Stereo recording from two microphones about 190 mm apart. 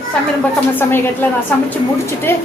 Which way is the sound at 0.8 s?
10° left (ahead or behind).